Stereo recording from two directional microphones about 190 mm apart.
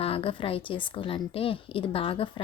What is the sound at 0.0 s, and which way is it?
Speech, 30° left (ahead or behind).